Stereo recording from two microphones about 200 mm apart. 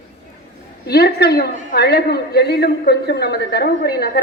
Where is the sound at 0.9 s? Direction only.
50° left (ahead or behind).